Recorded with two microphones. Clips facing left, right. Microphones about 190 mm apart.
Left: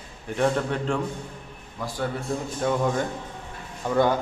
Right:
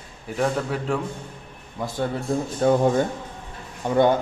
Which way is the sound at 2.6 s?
30° right (ahead or behind).